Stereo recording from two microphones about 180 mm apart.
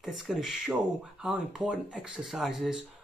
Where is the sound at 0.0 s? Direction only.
Centre (ahead or behind).